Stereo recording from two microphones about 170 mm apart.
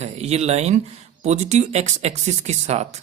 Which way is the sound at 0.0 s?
40° right (ahead or behind).